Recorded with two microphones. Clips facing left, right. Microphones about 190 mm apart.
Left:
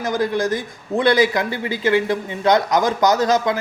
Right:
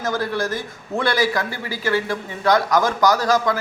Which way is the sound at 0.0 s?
15° left (ahead or behind).